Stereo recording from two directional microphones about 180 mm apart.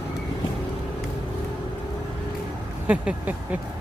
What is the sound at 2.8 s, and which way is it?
Speech, 5° right (ahead or behind).